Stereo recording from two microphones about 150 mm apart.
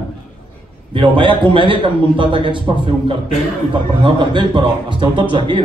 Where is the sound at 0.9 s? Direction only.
35° right (ahead or behind).